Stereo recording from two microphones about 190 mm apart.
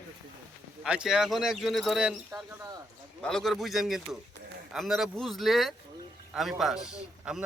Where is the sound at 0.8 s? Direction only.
5° right (ahead or behind).